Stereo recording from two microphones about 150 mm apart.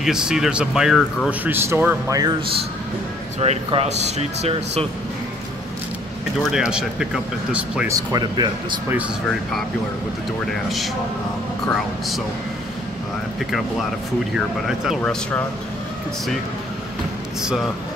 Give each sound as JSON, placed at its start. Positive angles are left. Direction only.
{"t": 0.0, "sound": "speech", "side_deg": -5}
{"t": 1.4, "sound": "a man's voice", "side_deg": -15}
{"t": 3.3, "sound": "speech", "side_deg": -45}
{"t": 6.4, "sound": "a man's voice", "side_deg": -5}
{"t": 7.9, "sound": "speech", "side_deg": -25}
{"t": 10.5, "sound": "speech", "side_deg": 0}
{"t": 14.3, "sound": "speech", "side_deg": -5}
{"t": 15.0, "sound": "speech", "side_deg": 10}